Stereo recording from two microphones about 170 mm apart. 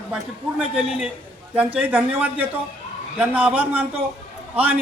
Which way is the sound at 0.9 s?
5° right (ahead or behind).